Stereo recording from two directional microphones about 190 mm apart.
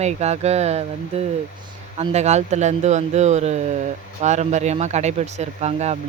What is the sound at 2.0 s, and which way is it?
Speech, 35° right (ahead or behind).